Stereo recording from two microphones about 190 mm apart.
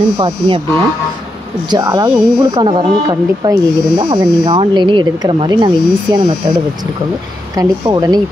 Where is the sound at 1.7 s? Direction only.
20° right (ahead or behind).